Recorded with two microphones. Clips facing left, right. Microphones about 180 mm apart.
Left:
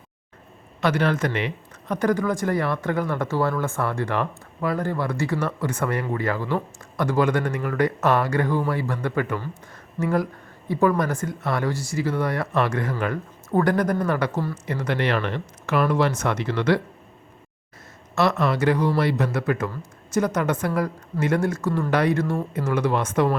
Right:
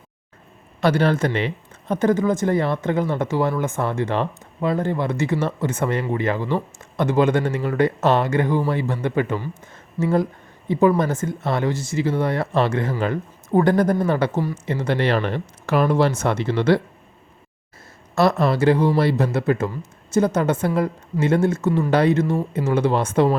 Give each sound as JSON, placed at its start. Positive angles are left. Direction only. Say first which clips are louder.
{"t": 0.8, "sound": "speech", "louder": "right 3 dB", "side_deg": -30}
{"t": 18.1, "sound": "speech", "louder": "right 3 dB", "side_deg": -35}